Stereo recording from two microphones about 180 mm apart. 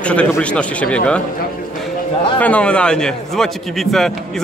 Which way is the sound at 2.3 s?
10° left (ahead or behind).